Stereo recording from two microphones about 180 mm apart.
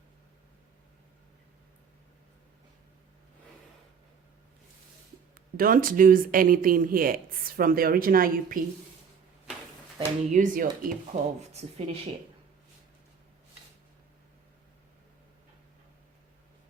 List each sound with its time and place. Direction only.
5.5 s speech: 50° right (ahead or behind)
10.0 s speech: 45° right (ahead or behind)
11.3 s speech: 35° right (ahead or behind)